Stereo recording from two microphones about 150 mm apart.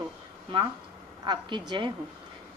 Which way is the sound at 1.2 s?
30° right (ahead or behind).